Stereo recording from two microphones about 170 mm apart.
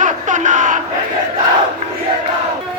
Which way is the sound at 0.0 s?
45° right (ahead or behind).